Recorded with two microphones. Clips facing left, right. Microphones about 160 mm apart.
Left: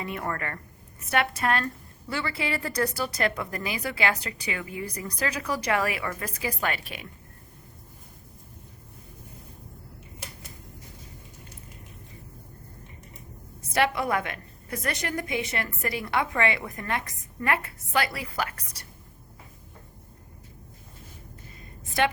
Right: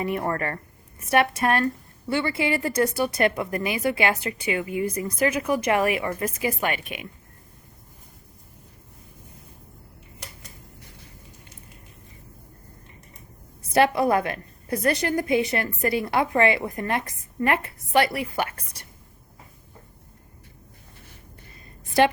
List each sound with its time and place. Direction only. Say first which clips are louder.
0.0 s a woman's voice: right 6 dB; 30° right (ahead or behind)
13.7 s a woman's voice: right 6 dB; 30° right (ahead or behind)